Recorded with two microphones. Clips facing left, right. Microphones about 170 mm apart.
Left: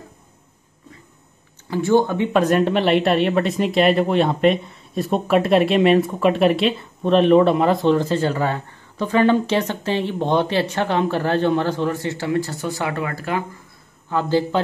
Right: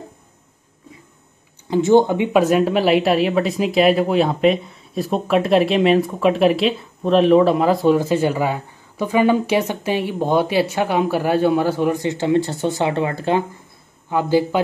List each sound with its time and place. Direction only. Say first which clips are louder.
1.7 s speech: right 4 dB; 20° right (ahead or behind)
2.4 s speech: right 1 dB; 5° right (ahead or behind); by 13.4 s 25° right (ahead or behind)
14.0 s speech: right 2 dB; 15° right (ahead or behind)